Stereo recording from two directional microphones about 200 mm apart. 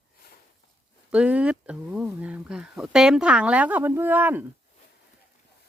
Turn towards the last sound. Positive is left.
turn(degrees=-10)  # may be behind; listen again after turning